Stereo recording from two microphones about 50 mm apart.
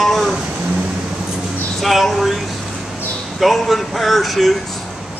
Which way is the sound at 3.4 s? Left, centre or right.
Centre.